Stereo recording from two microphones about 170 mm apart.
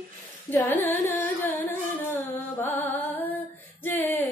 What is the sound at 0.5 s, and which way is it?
Carnatic music, 10° left (ahead or behind).